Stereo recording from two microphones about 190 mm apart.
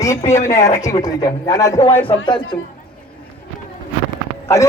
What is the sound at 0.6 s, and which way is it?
A man's voice, 15° left (ahead or behind).